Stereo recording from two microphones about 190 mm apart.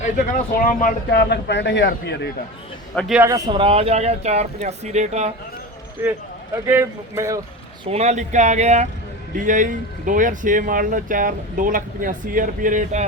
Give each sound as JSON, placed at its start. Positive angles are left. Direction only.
{"t": 0.6, "sound": "speech", "side_deg": 45}
{"t": 2.9, "sound": "a man's voice", "side_deg": 5}
{"t": 3.2, "sound": "speech", "side_deg": -20}
{"t": 6.0, "sound": "speech", "side_deg": -10}
{"t": 7.9, "sound": "speech", "side_deg": -35}